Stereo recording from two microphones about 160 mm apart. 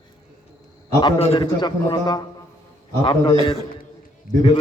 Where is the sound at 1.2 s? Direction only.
40° left (ahead or behind).